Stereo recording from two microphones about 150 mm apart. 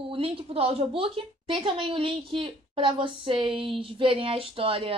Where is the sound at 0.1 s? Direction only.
40° right (ahead or behind).